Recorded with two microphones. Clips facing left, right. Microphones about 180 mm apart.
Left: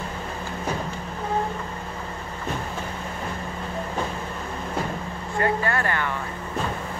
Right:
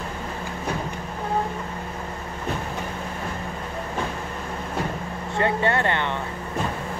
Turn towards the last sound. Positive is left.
turn(degrees=-25)  # may be behind; listen again after turning